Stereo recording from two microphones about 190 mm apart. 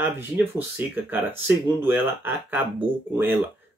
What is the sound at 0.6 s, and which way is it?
Speech, 10° right (ahead or behind).